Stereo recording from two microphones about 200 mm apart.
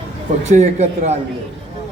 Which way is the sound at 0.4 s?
35° right (ahead or behind).